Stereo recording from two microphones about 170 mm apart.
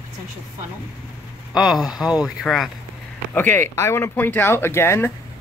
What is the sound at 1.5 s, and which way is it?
Speech, 5° right (ahead or behind).